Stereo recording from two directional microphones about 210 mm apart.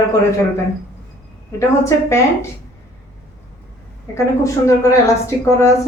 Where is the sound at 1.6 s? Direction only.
15° left (ahead or behind).